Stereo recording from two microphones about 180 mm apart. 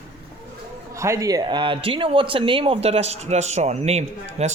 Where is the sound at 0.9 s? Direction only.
15° right (ahead or behind).